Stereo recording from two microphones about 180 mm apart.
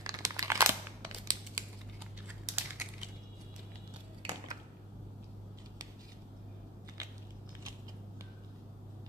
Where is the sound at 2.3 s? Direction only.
10° right (ahead or behind).